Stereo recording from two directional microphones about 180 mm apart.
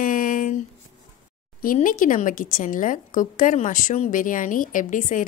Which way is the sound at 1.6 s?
50° left (ahead or behind).